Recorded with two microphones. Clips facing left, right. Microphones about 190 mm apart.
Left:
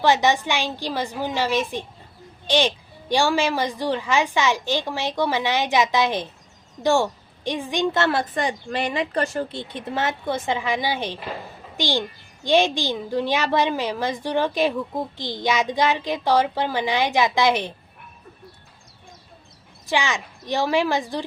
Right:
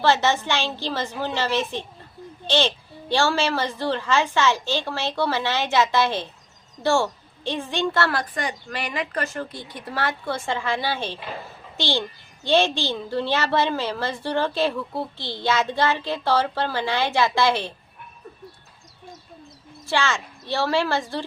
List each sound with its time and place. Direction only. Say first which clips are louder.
0.0 s a child's voice: left 1 dB; 15° left (ahead or behind)
19.9 s a child's voice: even; 15° left (ahead or behind)